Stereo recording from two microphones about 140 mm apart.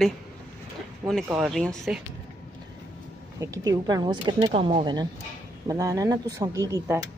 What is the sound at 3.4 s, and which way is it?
A woman's voice, 25° right (ahead or behind).